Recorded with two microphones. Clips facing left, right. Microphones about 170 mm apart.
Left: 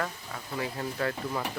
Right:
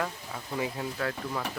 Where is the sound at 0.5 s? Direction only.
15° right (ahead or behind).